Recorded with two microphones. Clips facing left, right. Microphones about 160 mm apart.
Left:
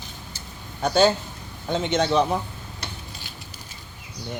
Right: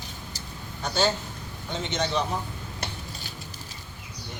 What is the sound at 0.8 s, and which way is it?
A man's voice, 55° left (ahead or behind).